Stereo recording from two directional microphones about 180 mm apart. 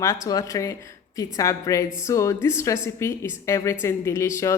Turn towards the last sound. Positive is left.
turn(degrees=15)  # may be behind; listen again after turning